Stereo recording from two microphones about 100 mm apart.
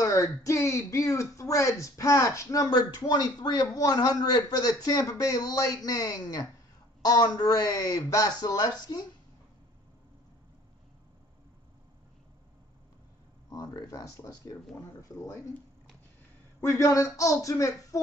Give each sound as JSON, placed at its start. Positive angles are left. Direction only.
{"t": 0.0, "sound": "speech", "side_deg": 35}
{"t": 13.5, "sound": "speech", "side_deg": 40}
{"t": 16.6, "sound": "speech", "side_deg": 30}